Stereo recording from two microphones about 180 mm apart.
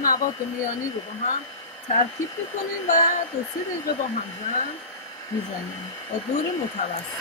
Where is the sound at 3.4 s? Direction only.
20° left (ahead or behind).